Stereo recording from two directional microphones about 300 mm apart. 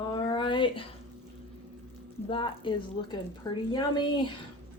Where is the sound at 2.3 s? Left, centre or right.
Centre.